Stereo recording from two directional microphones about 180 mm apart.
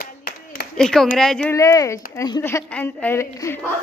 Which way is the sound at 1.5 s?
15° left (ahead or behind).